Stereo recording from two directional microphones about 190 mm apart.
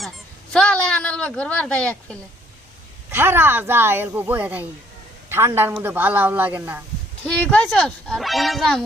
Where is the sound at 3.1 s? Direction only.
10° right (ahead or behind).